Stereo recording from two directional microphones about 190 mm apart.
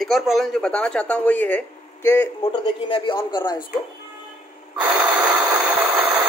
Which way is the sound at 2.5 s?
25° left (ahead or behind).